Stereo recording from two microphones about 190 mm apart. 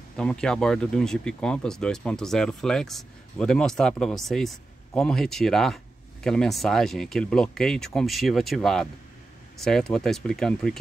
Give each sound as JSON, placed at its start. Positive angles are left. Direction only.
{"t": 0.2, "sound": "speech", "side_deg": 5}